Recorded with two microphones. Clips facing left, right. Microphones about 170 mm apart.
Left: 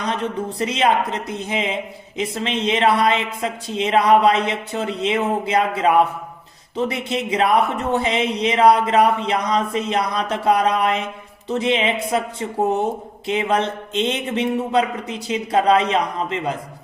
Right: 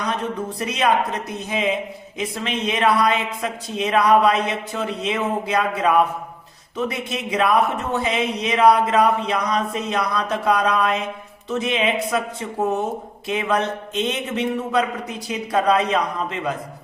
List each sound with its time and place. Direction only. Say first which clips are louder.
0.0 s speech: left 1 dB; 25° left (ahead or behind)